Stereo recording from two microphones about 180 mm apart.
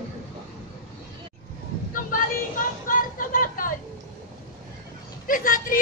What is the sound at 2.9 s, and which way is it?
Vehicle, 50° left (ahead or behind).